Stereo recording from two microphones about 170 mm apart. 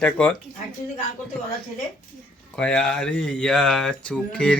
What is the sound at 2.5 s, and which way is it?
Speech, 5° left (ahead or behind).